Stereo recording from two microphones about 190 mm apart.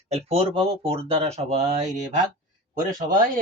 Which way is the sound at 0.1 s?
30° right (ahead or behind).